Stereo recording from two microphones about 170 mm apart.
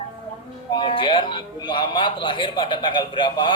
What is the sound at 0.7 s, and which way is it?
A man's voice, 30° left (ahead or behind).